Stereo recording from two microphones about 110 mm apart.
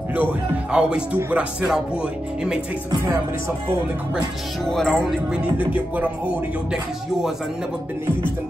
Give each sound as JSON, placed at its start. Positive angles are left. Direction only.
{"t": 0.1, "sound": "speech", "side_deg": -15}
{"t": 4.8, "sound": "speech", "side_deg": -5}